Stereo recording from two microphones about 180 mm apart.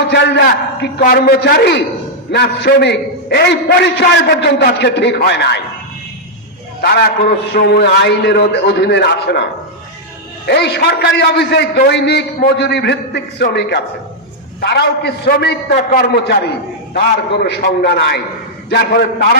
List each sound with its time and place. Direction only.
0.1 s a man's voice: 65° left (ahead or behind)
6.8 s a man's voice: 65° left (ahead or behind)
10.4 s a man's voice: 65° left (ahead or behind)
17.3 s a man's voice: 75° left (ahead or behind)
17.7 s a man's voice: 55° left (ahead or behind)